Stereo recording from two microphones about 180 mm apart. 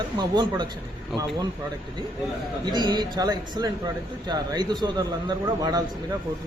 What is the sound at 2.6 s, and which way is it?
A man's voice, 25° right (ahead or behind).